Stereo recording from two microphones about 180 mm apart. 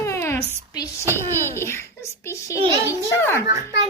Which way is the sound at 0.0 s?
15° left (ahead or behind).